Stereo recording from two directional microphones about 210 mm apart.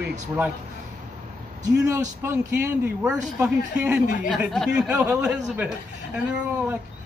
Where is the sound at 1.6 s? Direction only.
15° right (ahead or behind).